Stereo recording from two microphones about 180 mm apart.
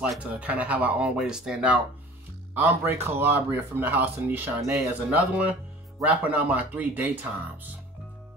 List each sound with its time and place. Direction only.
0.0 s speech: 5° right (ahead or behind)